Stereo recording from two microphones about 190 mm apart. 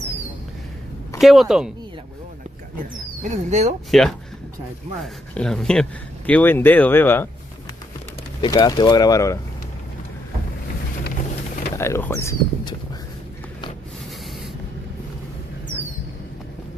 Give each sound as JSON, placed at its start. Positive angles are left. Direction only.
{"t": 1.2, "sound": "speech", "side_deg": 0}
{"t": 3.2, "sound": "speech", "side_deg": -40}
{"t": 3.9, "sound": "speech", "side_deg": 0}
{"t": 8.4, "sound": "speech", "side_deg": 20}
{"t": 11.7, "sound": "speech", "side_deg": 15}